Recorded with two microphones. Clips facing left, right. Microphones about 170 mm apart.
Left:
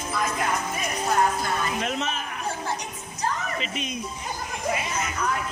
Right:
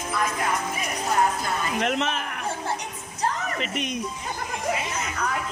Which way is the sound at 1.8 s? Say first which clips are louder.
Right 3 dB; 65° right (ahead or behind).